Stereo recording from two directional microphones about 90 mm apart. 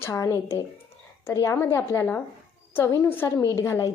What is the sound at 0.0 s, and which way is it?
A woman's voice, 35° left (ahead or behind).